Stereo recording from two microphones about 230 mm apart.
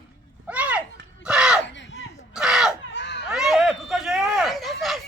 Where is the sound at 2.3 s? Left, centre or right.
Centre.